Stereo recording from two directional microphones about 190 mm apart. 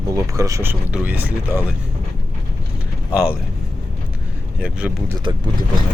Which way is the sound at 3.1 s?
5° right (ahead or behind).